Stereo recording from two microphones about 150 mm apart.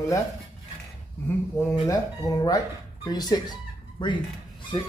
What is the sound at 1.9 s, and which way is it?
Speech, 25° left (ahead or behind).